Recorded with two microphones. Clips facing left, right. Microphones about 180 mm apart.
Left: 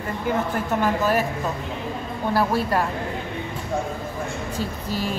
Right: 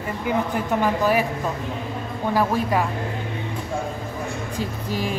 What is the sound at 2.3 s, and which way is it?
Speech, 15° right (ahead or behind).